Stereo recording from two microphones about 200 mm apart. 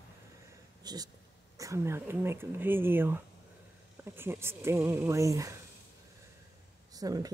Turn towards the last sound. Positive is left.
turn(degrees=-20)  # may be behind; listen again after turning